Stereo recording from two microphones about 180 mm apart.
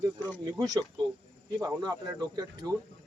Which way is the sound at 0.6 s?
20° right (ahead or behind).